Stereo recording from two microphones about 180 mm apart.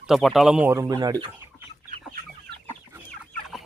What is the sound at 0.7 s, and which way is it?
Speech, 20° right (ahead or behind).